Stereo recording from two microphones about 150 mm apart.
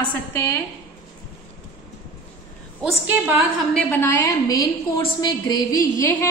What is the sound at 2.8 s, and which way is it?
Speech, 10° right (ahead or behind).